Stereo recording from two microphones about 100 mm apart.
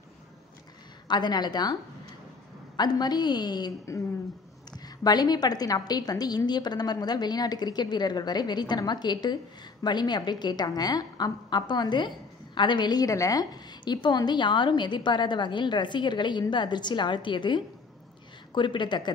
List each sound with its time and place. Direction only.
1.0 s a woman's voice: 45° left (ahead or behind)
2.8 s a woman's voice: 45° left (ahead or behind)
4.7 s a woman's voice: 40° left (ahead or behind)